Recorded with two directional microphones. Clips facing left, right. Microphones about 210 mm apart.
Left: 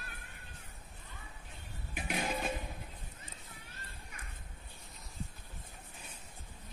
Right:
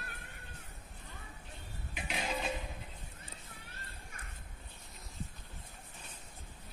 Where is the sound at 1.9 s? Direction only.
50° left (ahead or behind).